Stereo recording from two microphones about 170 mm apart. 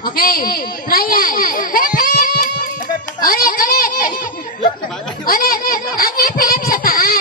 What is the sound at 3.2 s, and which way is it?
Speech, 60° left (ahead or behind).